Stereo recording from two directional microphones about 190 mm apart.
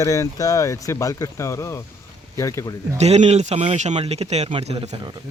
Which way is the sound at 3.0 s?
35° right (ahead or behind).